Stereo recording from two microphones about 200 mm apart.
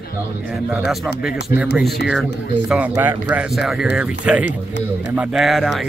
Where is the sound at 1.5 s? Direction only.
45° left (ahead or behind).